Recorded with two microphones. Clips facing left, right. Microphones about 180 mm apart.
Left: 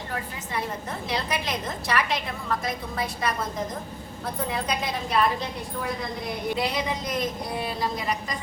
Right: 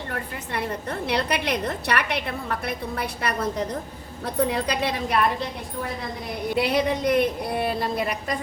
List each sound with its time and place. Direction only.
0.1 s a woman's voice: 65° right (ahead or behind)
6.6 s a woman's voice: 60° right (ahead or behind)